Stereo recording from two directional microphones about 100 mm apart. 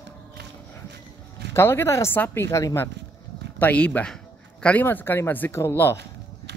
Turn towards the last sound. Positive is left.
turn(degrees=25)  # may be behind; listen again after turning